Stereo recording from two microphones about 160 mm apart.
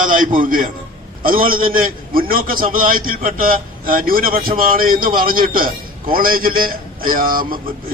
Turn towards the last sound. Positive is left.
turn(degrees=-65)  # may be behind; listen again after turning